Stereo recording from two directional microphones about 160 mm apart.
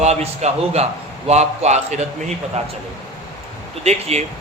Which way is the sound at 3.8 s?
45° right (ahead or behind).